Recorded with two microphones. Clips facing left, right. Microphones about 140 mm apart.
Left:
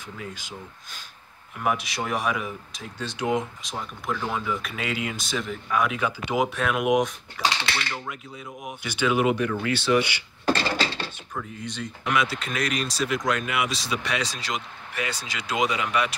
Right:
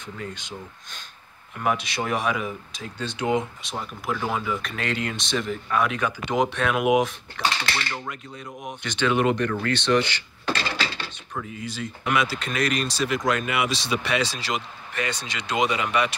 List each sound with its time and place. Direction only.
0.0 s speech: 5° left (ahead or behind)
4.6 s speech: 5° left (ahead or behind)
10.4 s a sound: 40° left (ahead or behind)
11.3 s speech: 5° right (ahead or behind)